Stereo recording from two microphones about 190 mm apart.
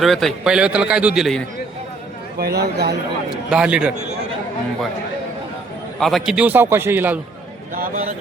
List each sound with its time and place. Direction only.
0.0 s a man's voice: centre (ahead or behind)
2.4 s a man's voice: 60° right (ahead or behind)
3.5 s a man's voice: 5° right (ahead or behind)
6.0 s a man's voice: centre (ahead or behind)